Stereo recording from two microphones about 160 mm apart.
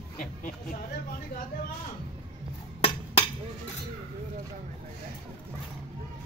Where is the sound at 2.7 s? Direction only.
40° left (ahead or behind).